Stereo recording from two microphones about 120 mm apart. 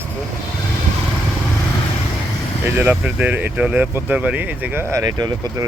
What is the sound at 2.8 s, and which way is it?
Speech, 15° right (ahead or behind).